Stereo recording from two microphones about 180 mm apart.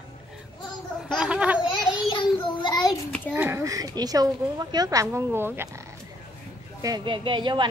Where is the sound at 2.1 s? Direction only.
25° left (ahead or behind).